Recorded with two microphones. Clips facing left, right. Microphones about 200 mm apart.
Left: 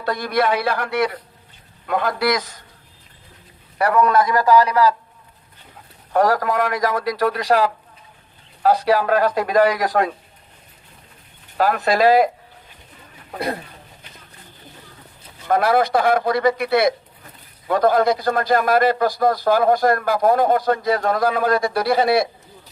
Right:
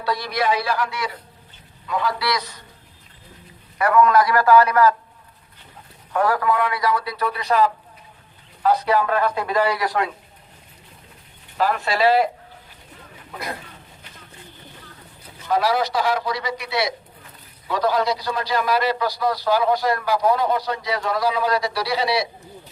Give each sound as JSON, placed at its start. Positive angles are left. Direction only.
{"t": 0.0, "sound": "a man's voice", "side_deg": 50}
{"t": 3.8, "sound": "a man's voice", "side_deg": 35}
{"t": 6.1, "sound": "a man's voice", "side_deg": 40}
{"t": 7.0, "sound": "speech", "side_deg": 90}
{"t": 9.4, "sound": "a man's voice", "side_deg": 45}
{"t": 11.5, "sound": "a man's voice", "side_deg": 50}
{"t": 15.4, "sound": "a man's voice", "side_deg": 55}